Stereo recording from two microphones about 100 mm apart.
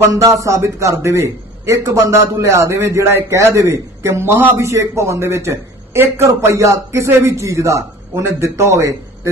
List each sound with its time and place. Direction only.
0.0 s a man's voice: 30° right (ahead or behind)